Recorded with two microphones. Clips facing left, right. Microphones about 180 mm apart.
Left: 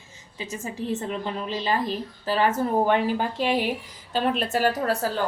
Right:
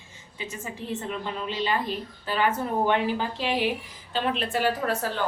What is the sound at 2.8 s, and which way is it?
A woman's voice, 50° left (ahead or behind).